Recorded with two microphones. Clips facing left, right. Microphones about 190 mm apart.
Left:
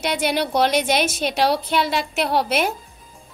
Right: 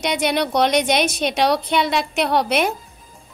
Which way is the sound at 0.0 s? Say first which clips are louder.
Right 1 dB; 5° left (ahead or behind).